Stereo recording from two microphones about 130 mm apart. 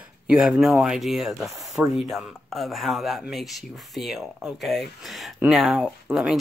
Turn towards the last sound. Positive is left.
turn(degrees=-5)  # may be behind; listen again after turning